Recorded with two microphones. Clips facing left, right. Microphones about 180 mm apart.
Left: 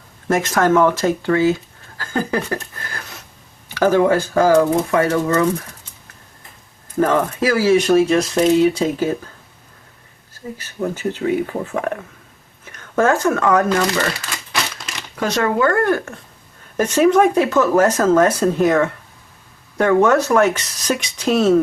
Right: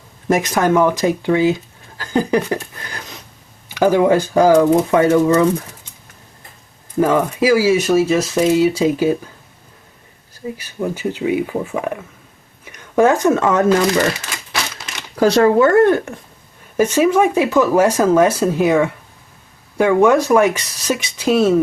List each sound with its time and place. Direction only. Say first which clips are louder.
0.3 s speech: right 1 dB; 15° right (ahead or behind)
2.0 s a sound: right 4 dB; 15° right (ahead or behind)
3.8 s speech: right 1 dB; 15° right (ahead or behind)
7.0 s speech: right 2 dB; 10° right (ahead or behind)
10.3 s speech: right 3 dB; 10° right (ahead or behind)
15.1 s speech: right 7 dB; 35° right (ahead or behind)
16.7 s speech: even; 10° right (ahead or behind)